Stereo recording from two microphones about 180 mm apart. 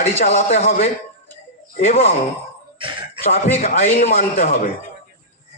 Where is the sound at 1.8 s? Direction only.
35° left (ahead or behind).